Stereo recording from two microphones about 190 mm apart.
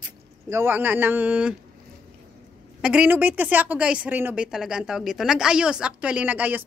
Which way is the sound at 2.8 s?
5° right (ahead or behind).